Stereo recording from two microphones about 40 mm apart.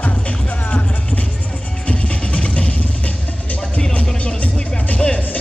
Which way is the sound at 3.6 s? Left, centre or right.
Left.